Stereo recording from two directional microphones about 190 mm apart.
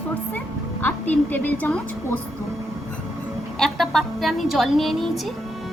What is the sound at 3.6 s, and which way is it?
A woman's voice, centre (ahead or behind).